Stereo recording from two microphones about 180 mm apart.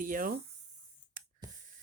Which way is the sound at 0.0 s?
50° right (ahead or behind).